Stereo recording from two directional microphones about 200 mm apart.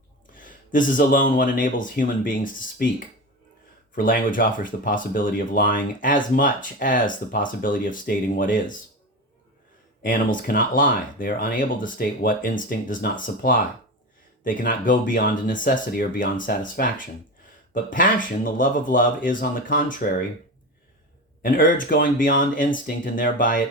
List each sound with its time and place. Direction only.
0.3 s speech: 45° left (ahead or behind)
3.9 s speech: 45° left (ahead or behind)
10.0 s speech: 45° left (ahead or behind)
17.9 s speech: 45° left (ahead or behind)
21.4 s speech: 45° left (ahead or behind)